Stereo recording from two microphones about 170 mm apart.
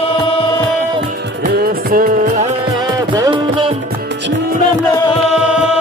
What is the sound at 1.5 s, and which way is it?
Music, 65° right (ahead or behind).